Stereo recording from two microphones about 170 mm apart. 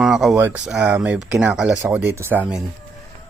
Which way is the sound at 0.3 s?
10° right (ahead or behind).